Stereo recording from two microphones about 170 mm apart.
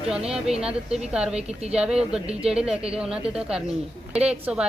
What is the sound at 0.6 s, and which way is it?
A woman's voice, 5° right (ahead or behind).